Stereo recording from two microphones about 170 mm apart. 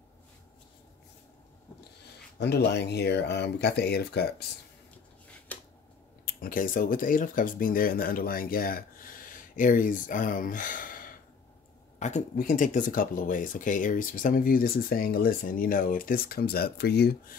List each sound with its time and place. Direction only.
2.3 s speech: 80° left
5.5 s scissors: 10° left (ahead or behind)
6.2 s speech: 55° left (ahead or behind)